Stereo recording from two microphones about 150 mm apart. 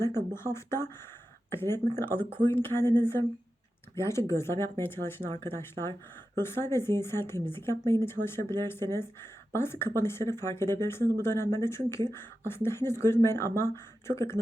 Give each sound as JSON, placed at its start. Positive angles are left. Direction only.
{"t": 0.3, "sound": "speech", "side_deg": 15}